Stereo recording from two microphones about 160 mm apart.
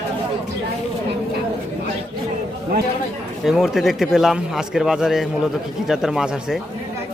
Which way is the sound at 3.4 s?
Centre (ahead or behind).